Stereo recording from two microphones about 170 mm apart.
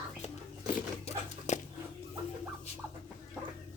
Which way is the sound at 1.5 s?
45° left (ahead or behind).